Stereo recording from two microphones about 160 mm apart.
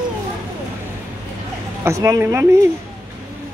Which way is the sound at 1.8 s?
20° right (ahead or behind).